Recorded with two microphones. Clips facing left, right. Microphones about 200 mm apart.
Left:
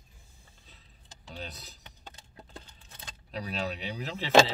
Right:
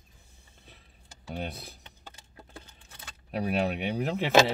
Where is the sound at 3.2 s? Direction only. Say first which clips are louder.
Right 7 dB; 55° right (ahead or behind).